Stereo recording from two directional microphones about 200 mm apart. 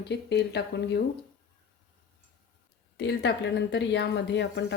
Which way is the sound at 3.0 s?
60° left (ahead or behind).